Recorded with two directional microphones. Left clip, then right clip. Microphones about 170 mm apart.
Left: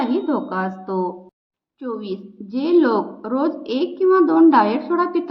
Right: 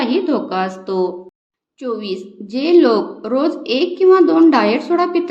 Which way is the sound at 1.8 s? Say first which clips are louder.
Right 5 dB; 15° right (ahead or behind).